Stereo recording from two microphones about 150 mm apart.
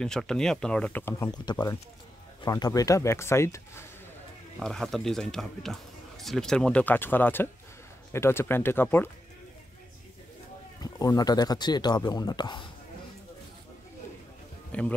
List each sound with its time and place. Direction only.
0.0 s speech: 5° left (ahead or behind)
1.3 s speech: 30° left (ahead or behind)
4.6 s speech: centre (ahead or behind)
10.8 s speech: 25° left (ahead or behind)
14.7 s speech: 10° left (ahead or behind)